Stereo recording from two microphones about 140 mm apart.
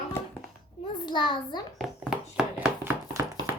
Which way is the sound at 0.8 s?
35° left (ahead or behind).